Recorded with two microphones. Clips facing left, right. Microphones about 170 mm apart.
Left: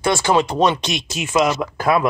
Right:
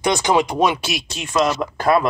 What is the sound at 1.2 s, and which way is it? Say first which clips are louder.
Speech: left 1 dB; 5° left (ahead or behind).